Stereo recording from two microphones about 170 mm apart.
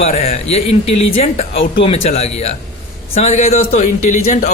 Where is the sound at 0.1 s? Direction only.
35° left (ahead or behind).